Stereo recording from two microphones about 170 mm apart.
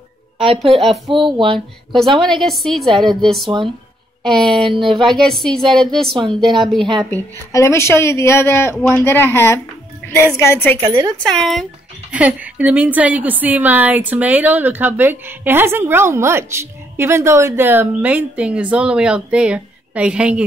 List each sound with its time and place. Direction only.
0.7 s a woman's voice: centre (ahead or behind)
1.1 s speech: 30° right (ahead or behind)
2.0 s a woman's voice: centre (ahead or behind)
3.4 s speech: 25° right (ahead or behind)
4.2 s a woman's voice: centre (ahead or behind)
4.6 s speech: 30° right (ahead or behind)
5.2 s a woman's voice: centre (ahead or behind)
6.8 s speech: 25° right (ahead or behind)
7.5 s speech: 15° left (ahead or behind)
10.9 s a woman's voice: 20° right (ahead or behind)
11.2 s a woman's voice: centre (ahead or behind)
12.1 s a woman's voice: 10° right (ahead or behind)